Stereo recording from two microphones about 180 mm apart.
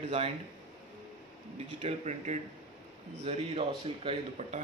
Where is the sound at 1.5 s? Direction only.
40° right (ahead or behind).